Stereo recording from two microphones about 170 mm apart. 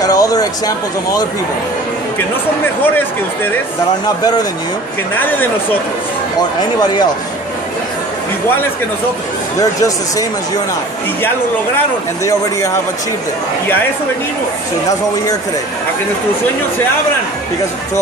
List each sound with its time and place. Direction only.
0.0 s speech: 20° left (ahead or behind)
5.1 s speech: 10° left (ahead or behind)
9.6 s speech: 20° left (ahead or behind)